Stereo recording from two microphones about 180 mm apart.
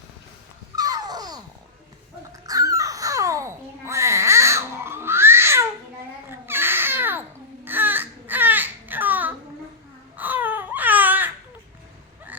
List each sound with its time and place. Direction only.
0.8 s a sound: 20° right (ahead or behind)
2.5 s babbling: 20° right (ahead or behind)
6.4 s baby cry: 10° right (ahead or behind)